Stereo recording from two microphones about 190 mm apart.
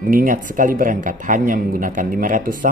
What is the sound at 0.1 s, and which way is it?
Speech, 45° right (ahead or behind).